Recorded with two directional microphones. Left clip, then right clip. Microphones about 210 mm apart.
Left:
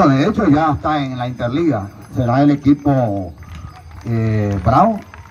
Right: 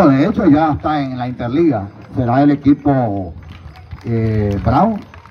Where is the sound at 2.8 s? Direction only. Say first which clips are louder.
Right 1 dB; 30° left (ahead or behind).